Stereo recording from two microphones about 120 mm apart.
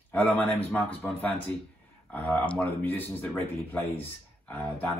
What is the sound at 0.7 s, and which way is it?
Speech, 10° left (ahead or behind).